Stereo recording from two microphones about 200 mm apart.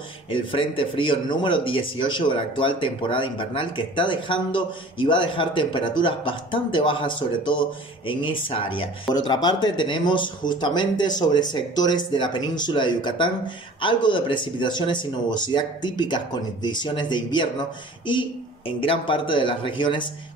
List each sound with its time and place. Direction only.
0.3 s speech: 25° left (ahead or behind)
18.8 s speech: 25° left (ahead or behind)